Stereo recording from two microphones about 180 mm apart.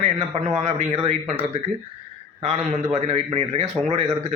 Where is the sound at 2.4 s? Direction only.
35° right (ahead or behind).